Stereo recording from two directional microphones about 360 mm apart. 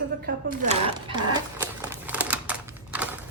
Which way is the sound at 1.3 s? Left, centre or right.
Centre.